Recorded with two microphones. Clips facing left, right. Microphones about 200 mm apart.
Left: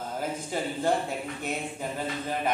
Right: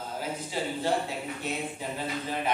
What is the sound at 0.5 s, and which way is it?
Speech, 50° left (ahead or behind).